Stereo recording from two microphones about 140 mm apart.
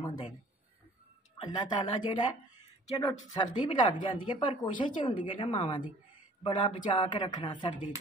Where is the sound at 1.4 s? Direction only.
30° left (ahead or behind).